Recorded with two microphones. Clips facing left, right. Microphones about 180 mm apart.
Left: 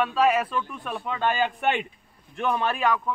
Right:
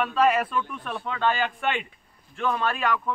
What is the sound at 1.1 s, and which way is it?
A man's voice, 15° left (ahead or behind).